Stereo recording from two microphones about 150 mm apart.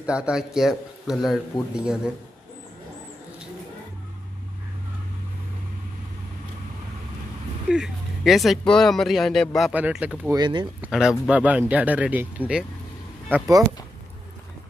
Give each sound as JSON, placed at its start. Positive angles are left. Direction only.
{"t": 0.0, "sound": "speech", "side_deg": -5}
{"t": 7.7, "sound": "speech", "side_deg": -5}
{"t": 9.7, "sound": "speech", "side_deg": -10}
{"t": 10.3, "sound": "speech", "side_deg": -30}
{"t": 10.8, "sound": "speech", "side_deg": -5}